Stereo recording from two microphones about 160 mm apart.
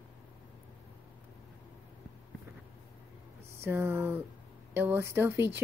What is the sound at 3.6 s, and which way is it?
Speech, 15° right (ahead or behind).